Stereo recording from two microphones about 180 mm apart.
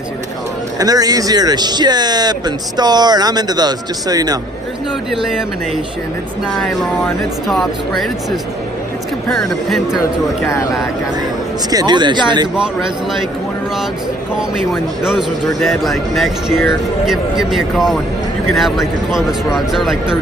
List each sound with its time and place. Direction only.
0.7 s speech: 20° right (ahead or behind)
6.5 s speech: centre (ahead or behind)
11.7 s speech: 25° right (ahead or behind)
12.5 s speech: centre (ahead or behind)
14.3 s speech: centre (ahead or behind)